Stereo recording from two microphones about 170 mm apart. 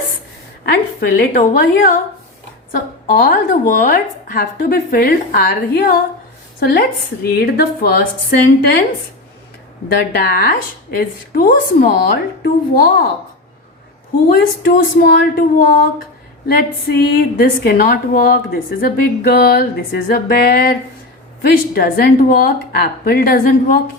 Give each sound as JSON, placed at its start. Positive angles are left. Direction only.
{"t": 0.6, "sound": "a woman's voice", "side_deg": 65}
{"t": 10.0, "sound": "a woman's voice", "side_deg": 70}
{"t": 14.3, "sound": "a woman's voice", "side_deg": 60}
{"t": 21.8, "sound": "a woman's voice", "side_deg": 65}